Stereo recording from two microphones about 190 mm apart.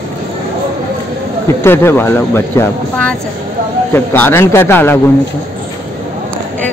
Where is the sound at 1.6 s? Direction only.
10° left (ahead or behind).